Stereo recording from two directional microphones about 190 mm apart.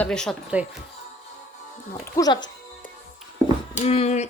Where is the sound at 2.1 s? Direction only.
20° left (ahead or behind).